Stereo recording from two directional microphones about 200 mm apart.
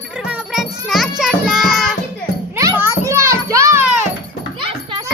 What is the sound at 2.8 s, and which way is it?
Children playing, 15° right (ahead or behind).